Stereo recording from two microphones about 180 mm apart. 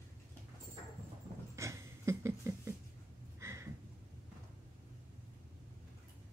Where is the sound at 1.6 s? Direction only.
15° right (ahead or behind).